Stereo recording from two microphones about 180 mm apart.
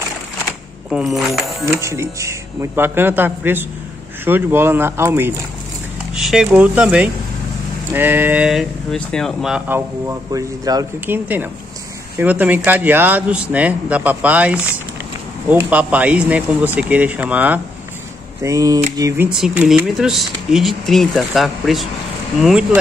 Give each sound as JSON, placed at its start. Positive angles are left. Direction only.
{"t": 0.8, "sound": "speech", "side_deg": 0}
{"t": 1.8, "sound": "speech", "side_deg": -15}
{"t": 6.1, "sound": "speech", "side_deg": 0}
{"t": 12.2, "sound": "speech", "side_deg": -10}
{"t": 19.2, "sound": "speech", "side_deg": -5}